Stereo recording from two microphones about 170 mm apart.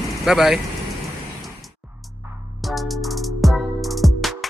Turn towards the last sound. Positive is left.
turn(degrees=0)  # may be behind; listen again after turning